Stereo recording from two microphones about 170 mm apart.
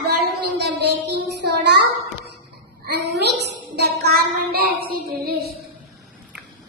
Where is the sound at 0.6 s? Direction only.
80° right.